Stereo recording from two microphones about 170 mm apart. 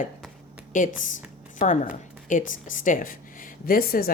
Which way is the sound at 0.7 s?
50° left (ahead or behind).